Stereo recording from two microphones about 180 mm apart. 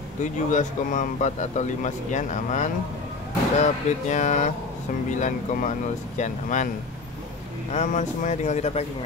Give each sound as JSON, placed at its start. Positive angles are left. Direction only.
{"t": 0.2, "sound": "speech", "side_deg": 45}
{"t": 7.7, "sound": "speech", "side_deg": 40}